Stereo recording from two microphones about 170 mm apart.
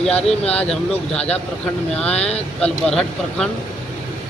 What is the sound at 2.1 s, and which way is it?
Speech, 40° left (ahead or behind).